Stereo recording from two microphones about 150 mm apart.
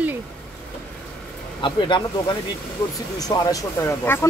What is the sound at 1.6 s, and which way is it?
Speech, 30° left (ahead or behind).